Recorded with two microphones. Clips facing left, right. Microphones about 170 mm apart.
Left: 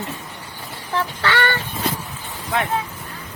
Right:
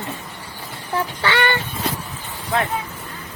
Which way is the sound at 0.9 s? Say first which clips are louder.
Even; 15° right (ahead or behind).